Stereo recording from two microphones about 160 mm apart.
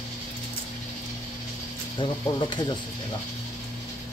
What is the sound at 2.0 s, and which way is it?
Speech, 25° left (ahead or behind).